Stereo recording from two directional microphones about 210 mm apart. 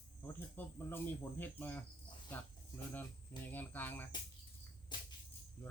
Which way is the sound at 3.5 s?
10° left (ahead or behind).